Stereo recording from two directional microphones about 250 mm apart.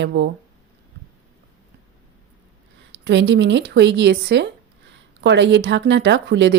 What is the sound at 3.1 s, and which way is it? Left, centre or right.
A woman's voice, right.